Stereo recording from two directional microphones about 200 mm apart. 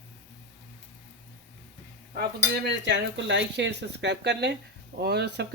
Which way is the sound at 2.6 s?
60° right (ahead or behind).